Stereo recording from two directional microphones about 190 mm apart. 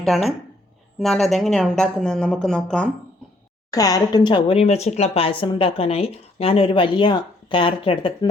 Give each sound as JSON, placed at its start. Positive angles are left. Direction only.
{"t": 0.0, "sound": "speech", "side_deg": 0}
{"t": 3.7, "sound": "speech", "side_deg": 20}